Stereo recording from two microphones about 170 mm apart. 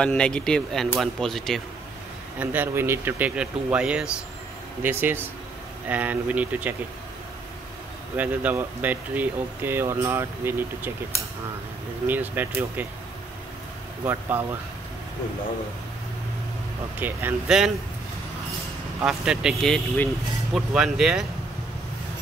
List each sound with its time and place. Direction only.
0.0 s speech: 5° left (ahead or behind)
2.3 s speech: 10° right (ahead or behind)
8.2 s speech: 10° right (ahead or behind)
14.0 s speech: 10° right (ahead or behind)
17.0 s speech: 10° right (ahead or behind)
18.9 s speech: 5° right (ahead or behind)